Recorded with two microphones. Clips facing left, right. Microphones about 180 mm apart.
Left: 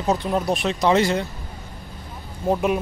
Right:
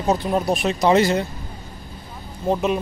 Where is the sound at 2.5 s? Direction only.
10° left (ahead or behind).